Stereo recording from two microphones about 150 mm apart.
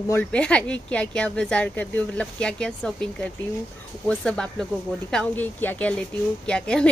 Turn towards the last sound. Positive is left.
turn(degrees=5)  # may be behind; listen again after turning